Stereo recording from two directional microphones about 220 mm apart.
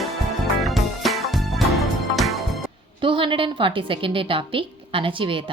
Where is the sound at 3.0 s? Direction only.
25° right (ahead or behind).